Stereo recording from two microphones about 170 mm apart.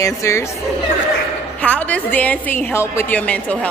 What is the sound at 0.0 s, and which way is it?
Speech, 15° left (ahead or behind).